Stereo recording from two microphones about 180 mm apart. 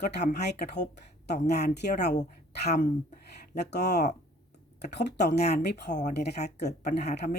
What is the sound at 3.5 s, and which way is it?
A woman's voice, 65° left (ahead or behind).